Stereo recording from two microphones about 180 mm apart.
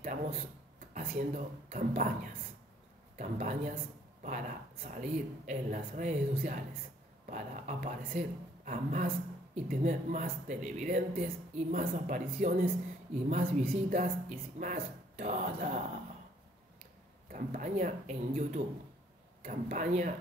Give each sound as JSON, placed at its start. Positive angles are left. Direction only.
{"t": 0.0, "sound": "speech", "side_deg": -40}
{"t": 17.3, "sound": "speech", "side_deg": -45}